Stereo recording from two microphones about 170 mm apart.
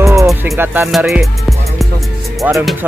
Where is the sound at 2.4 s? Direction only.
10° right (ahead or behind).